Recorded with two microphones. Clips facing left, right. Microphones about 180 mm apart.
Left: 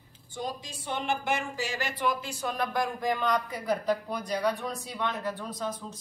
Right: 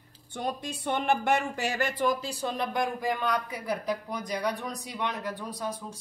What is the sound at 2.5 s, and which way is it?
Speech, 20° right (ahead or behind).